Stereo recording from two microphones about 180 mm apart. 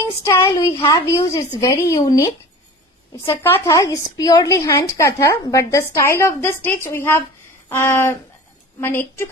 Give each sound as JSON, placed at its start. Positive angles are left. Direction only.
{"t": 0.2, "sound": "a woman's voice", "side_deg": 15}